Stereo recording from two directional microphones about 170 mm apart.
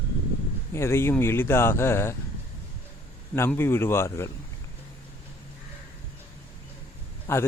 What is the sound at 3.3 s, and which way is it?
A man's voice, 15° left (ahead or behind).